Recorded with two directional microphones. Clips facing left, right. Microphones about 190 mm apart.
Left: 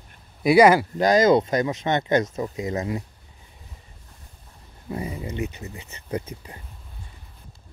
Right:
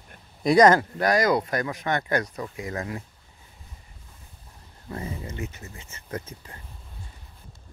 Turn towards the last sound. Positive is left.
turn(degrees=15)  # may be behind; listen again after turning